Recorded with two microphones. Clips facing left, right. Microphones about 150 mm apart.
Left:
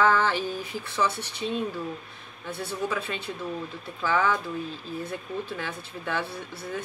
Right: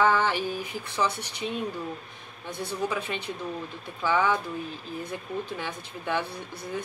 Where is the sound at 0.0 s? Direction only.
15° right (ahead or behind).